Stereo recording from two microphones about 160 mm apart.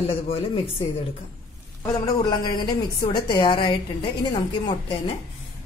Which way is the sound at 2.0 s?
25° left (ahead or behind).